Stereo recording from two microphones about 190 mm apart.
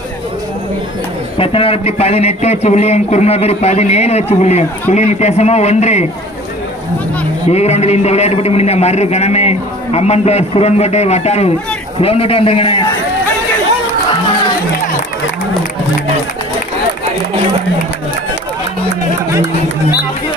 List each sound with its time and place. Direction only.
1.4 s a man's voice: 30° left (ahead or behind)
7.4 s a man's voice: 35° left (ahead or behind)